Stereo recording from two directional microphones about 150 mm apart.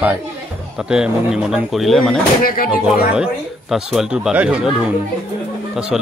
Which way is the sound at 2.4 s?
75° left (ahead or behind).